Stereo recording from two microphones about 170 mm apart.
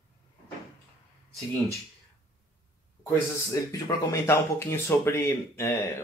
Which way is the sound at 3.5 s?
20° left (ahead or behind).